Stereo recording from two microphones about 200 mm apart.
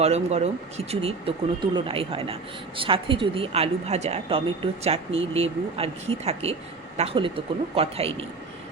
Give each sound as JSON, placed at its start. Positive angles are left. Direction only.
{"t": 0.0, "sound": "a woman's voice", "side_deg": -30}